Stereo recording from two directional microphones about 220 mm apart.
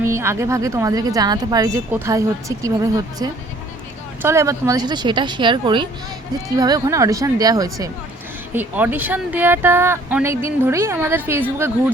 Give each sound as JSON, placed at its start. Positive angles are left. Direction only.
{"t": 0.0, "sound": "speech", "side_deg": -10}